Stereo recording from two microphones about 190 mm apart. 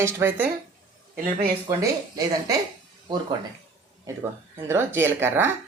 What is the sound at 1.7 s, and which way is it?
Speech, 20° right (ahead or behind).